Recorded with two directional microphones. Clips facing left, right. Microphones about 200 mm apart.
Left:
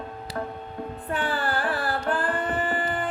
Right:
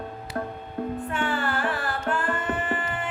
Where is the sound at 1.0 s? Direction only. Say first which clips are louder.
Left 4 dB; 35° left (ahead or behind).